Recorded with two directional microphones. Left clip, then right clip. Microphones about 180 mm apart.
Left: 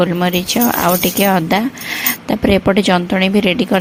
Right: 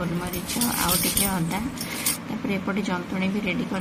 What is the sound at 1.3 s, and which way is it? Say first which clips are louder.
Speech: left 15 dB; 60° left (ahead or behind).